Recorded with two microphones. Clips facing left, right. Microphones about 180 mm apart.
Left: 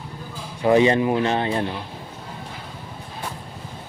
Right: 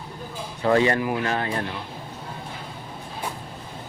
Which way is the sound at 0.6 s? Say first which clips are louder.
Left 4 dB; 15° left (ahead or behind).